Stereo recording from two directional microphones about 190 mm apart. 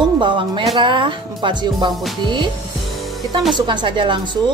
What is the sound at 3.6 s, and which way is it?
Speech, 25° right (ahead or behind).